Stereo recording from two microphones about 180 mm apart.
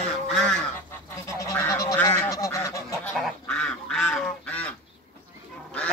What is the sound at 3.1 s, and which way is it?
Goose, 5° left (ahead or behind).